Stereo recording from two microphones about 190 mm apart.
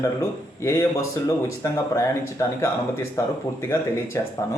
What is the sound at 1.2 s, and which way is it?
Speech, 15° left (ahead or behind).